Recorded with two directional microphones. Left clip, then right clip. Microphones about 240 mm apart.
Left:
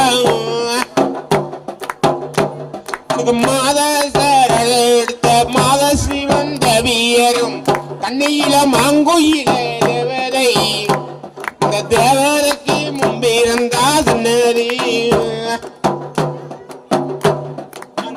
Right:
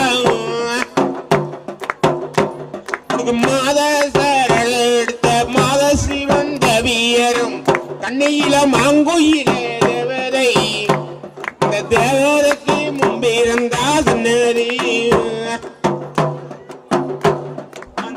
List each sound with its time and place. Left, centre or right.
0.0 s carnatic music: left
0.3 s music: left
3.2 s music: left